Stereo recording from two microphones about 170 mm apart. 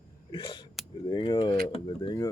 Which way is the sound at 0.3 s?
30° left (ahead or behind).